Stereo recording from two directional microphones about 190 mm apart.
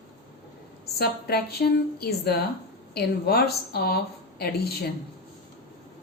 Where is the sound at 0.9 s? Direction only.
55° left (ahead or behind).